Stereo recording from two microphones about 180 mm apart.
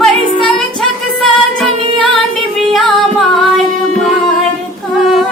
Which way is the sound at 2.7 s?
Centre (ahead or behind).